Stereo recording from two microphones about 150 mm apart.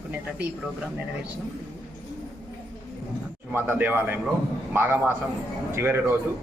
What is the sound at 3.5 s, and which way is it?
A man's voice, 15° right (ahead or behind).